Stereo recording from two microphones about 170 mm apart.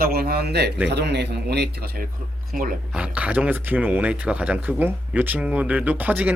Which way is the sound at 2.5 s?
55° right (ahead or behind).